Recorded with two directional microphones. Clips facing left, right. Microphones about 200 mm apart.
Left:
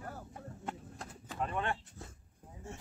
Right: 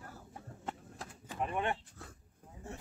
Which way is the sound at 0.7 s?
10° right (ahead or behind).